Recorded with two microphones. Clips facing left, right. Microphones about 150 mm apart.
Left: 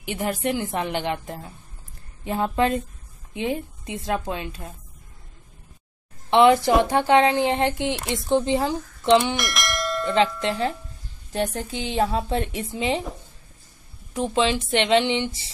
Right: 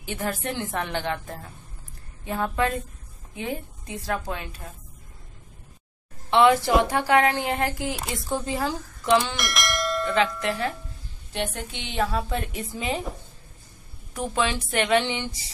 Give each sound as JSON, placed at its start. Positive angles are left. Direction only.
{"t": 0.0, "sound": "a woman's voice", "side_deg": 15}
{"t": 6.3, "sound": "a woman's voice", "side_deg": 20}
{"t": 9.4, "sound": "bell", "side_deg": 0}
{"t": 10.4, "sound": "a woman's voice", "side_deg": 25}
{"t": 11.3, "sound": "a woman's voice", "side_deg": 40}
{"t": 14.1, "sound": "a woman's voice", "side_deg": 20}